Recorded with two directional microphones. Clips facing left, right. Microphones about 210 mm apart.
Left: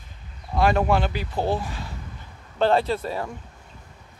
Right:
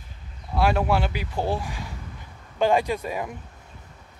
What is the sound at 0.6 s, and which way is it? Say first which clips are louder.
Speech: left 2 dB; 5° right (ahead or behind).